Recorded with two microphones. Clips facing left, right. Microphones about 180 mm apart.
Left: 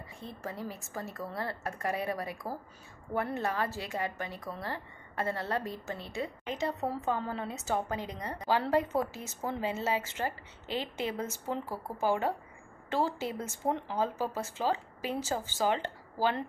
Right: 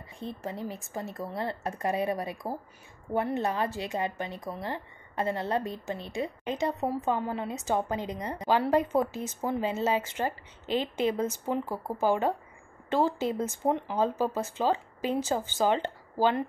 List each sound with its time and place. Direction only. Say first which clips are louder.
0.2 s speech: right 4 dB; 20° right (ahead or behind)